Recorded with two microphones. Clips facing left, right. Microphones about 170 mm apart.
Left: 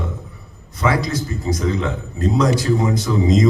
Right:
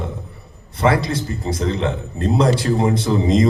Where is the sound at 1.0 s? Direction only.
30° right (ahead or behind).